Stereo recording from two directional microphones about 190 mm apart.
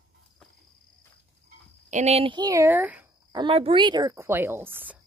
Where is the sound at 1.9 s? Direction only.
35° right (ahead or behind); by 3.0 s 10° right (ahead or behind).